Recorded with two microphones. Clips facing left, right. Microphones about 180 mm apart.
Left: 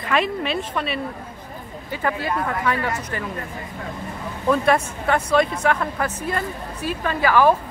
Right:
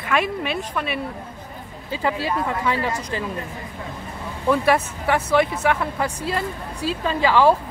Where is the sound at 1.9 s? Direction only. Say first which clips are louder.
Right 1 dB; 15° right (ahead or behind).